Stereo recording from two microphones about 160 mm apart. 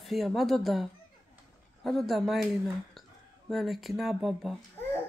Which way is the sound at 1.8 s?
Centre (ahead or behind).